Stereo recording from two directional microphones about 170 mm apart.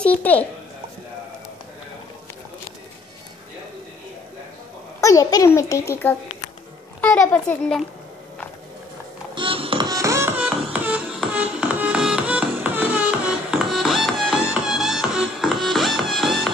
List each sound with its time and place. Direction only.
0.2 s a child's voice: 10° left (ahead or behind)
5.0 s a child's voice: 20° left (ahead or behind)
9.3 s music: 30° right (ahead or behind)
9.8 s music: 20° right (ahead or behind); by 16.3 s centre (ahead or behind)